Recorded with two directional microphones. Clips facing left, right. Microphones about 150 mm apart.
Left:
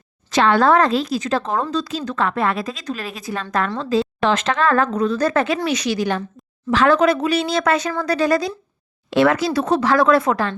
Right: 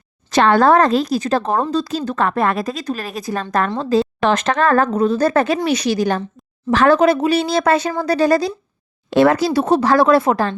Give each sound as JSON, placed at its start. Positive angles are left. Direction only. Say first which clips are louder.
{"t": 0.3, "sound": "speech", "louder": "right 2 dB", "side_deg": -45}
{"t": 4.9, "sound": "speech", "louder": "right 3 dB", "side_deg": -30}